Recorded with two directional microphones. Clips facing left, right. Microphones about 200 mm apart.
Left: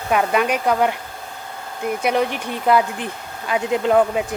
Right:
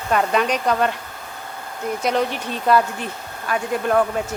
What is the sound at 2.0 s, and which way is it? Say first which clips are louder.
Speech: left 1 dB; 10° left (ahead or behind).